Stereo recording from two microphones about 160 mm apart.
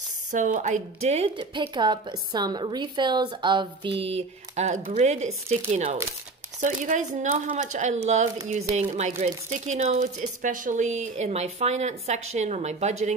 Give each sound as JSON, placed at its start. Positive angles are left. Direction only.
{"t": 0.3, "sound": "a woman's voice", "side_deg": -50}
{"t": 6.6, "sound": "speech", "side_deg": -50}